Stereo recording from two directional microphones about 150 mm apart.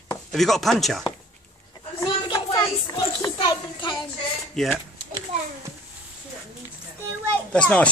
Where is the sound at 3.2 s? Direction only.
25° left (ahead or behind).